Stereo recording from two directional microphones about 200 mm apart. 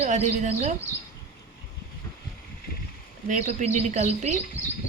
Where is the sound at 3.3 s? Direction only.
35° right (ahead or behind).